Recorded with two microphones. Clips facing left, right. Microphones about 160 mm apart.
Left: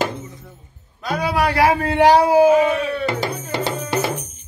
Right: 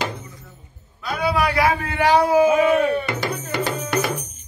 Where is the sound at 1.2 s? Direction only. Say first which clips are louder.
Even; 35° left (ahead or behind).